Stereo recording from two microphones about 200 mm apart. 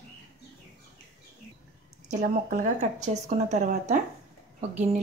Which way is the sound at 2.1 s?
35° right (ahead or behind).